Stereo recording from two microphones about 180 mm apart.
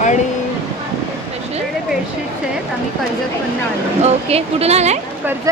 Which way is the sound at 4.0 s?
35° right (ahead or behind).